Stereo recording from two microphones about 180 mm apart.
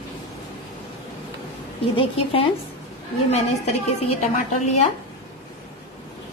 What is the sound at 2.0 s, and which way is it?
Speech, 30° left (ahead or behind).